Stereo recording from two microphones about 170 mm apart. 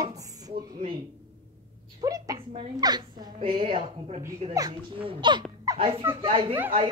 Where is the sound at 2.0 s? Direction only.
20° right (ahead or behind).